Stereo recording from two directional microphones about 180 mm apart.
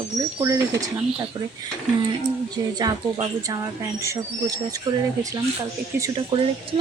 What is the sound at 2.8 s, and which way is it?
A woman's voice, 20° right (ahead or behind).